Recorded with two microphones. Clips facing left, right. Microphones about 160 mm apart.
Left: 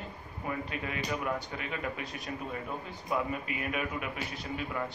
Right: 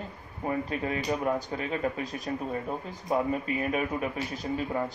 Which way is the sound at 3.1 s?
35° right (ahead or behind).